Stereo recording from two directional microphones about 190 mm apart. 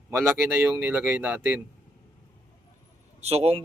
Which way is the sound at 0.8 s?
10° right (ahead or behind).